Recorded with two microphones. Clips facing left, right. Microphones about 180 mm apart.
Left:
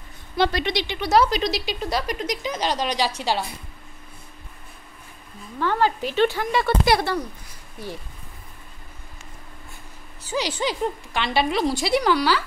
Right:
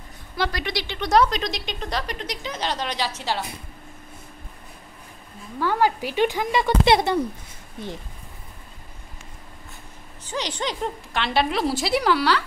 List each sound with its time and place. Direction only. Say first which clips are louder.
0.4 s speech: left 4 dB; 25° left (ahead or behind)
0.9 s speech: even; 5° left (ahead or behind)
5.6 s speech: even; 10° right (ahead or behind)
10.2 s a woman's voice: left 3 dB; 10° left (ahead or behind)